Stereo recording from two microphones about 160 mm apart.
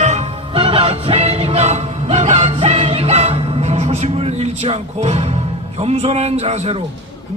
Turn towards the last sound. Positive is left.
turn(degrees=-40)  # may be behind; listen again after turning